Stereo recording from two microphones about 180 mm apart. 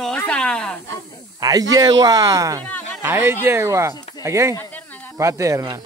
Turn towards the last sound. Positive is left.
turn(degrees=-15)  # may be behind; listen again after turning